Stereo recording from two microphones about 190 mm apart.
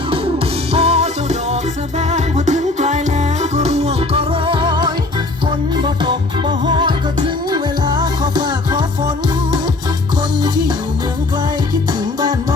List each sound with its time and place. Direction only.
0.7 s music: 35° right (ahead or behind)